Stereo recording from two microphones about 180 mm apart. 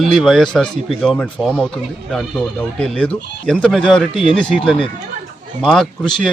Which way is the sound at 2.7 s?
5° left (ahead or behind).